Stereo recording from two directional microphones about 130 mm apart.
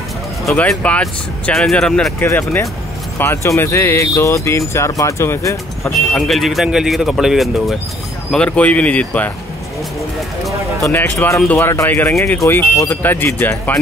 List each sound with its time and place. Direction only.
0.5 s speech: 5° left (ahead or behind)
2.1 s speech: 15° left (ahead or behind)
6.1 s speech: centre (ahead or behind)
10.8 s speech: 15° left (ahead or behind)